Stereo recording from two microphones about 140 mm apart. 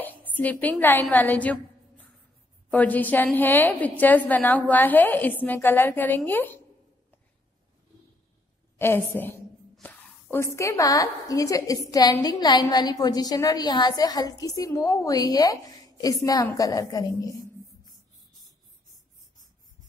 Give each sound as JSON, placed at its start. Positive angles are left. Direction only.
{"t": 0.3, "sound": "a woman's voice", "side_deg": 10}
{"t": 8.7, "sound": "a woman's voice", "side_deg": 15}
{"t": 9.8, "sound": "a sound", "side_deg": 0}
{"t": 10.3, "sound": "a woman's voice", "side_deg": 20}